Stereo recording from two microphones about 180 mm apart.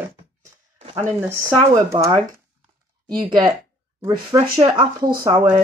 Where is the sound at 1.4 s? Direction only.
15° right (ahead or behind).